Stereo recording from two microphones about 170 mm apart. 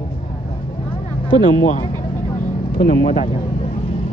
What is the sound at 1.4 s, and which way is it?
Speech, 50° left (ahead or behind).